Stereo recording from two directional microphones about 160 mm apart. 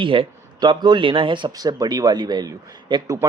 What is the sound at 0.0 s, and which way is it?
A man's voice, 30° right (ahead or behind).